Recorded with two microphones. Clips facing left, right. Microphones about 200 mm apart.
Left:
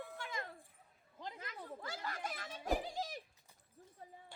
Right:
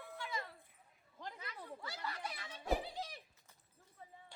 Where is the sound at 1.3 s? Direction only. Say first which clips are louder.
Left 1 dB; 50° left (ahead or behind).